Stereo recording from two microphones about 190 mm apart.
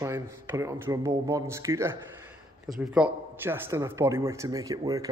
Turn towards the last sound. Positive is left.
turn(degrees=-20)  # may be behind; listen again after turning